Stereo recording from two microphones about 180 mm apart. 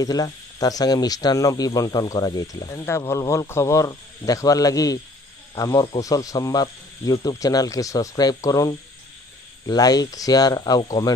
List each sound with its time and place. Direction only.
0.0 s speech: 20° left (ahead or behind)